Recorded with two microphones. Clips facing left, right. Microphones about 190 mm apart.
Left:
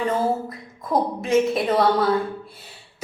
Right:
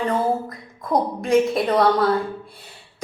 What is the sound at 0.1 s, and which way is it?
A woman's voice, 5° left (ahead or behind).